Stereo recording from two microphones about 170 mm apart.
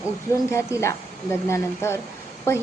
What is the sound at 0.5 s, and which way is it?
A woman's voice, 15° left (ahead or behind).